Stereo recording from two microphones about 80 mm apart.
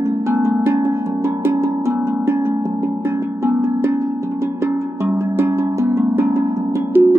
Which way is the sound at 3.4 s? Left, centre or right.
Right.